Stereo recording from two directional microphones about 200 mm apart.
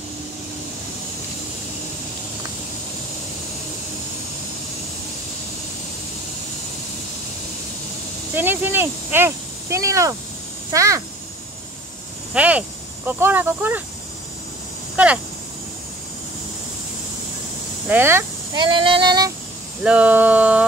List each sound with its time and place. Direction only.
8.4 s a child's voice: 10° right (ahead or behind)
12.4 s speech: 5° right (ahead or behind)
17.8 s speech: 10° right (ahead or behind)
19.8 s speech: 5° right (ahead or behind)